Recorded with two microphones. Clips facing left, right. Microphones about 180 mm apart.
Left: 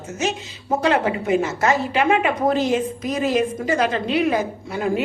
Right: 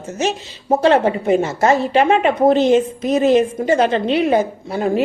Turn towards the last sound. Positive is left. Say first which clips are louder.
# right 4 dB
turn(degrees=-35)  # may be behind; listen again after turning